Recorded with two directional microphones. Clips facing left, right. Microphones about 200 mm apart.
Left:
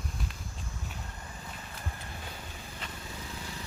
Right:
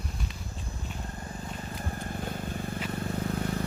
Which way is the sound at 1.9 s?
45° right (ahead or behind).